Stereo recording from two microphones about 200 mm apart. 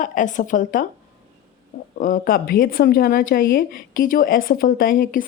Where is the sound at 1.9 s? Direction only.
40° left (ahead or behind).